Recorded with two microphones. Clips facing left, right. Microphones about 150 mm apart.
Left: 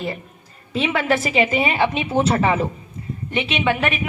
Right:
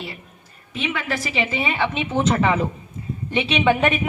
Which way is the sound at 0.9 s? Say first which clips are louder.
Left 10 dB; 70° left (ahead or behind).